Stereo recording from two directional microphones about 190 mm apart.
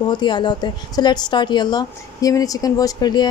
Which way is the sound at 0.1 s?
25° left (ahead or behind).